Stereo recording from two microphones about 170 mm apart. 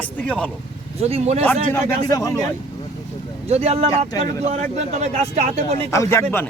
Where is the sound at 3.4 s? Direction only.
40° right (ahead or behind).